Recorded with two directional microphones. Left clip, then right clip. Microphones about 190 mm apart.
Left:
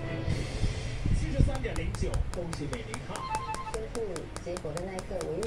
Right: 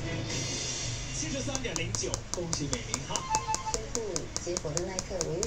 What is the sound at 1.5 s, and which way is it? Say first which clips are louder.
Speech: right 2 dB; 15° left (ahead or behind).